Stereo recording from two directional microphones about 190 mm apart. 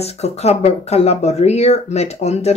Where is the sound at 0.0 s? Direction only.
35° left (ahead or behind).